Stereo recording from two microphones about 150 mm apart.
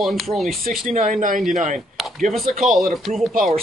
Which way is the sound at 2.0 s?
Centre (ahead or behind).